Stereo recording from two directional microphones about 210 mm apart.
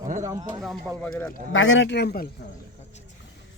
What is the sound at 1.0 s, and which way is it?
Speech, 5° left (ahead or behind).